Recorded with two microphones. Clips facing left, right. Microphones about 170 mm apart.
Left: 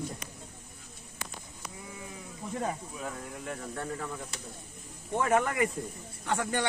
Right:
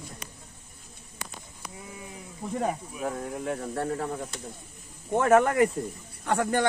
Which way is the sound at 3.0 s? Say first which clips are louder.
Right 11 dB; 45° right (ahead or behind).